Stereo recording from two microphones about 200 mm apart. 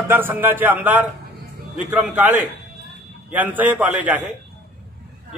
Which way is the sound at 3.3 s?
10° right (ahead or behind).